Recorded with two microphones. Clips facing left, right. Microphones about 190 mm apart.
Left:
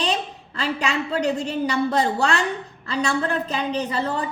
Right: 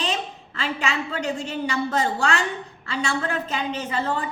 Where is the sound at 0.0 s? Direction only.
40° left (ahead or behind).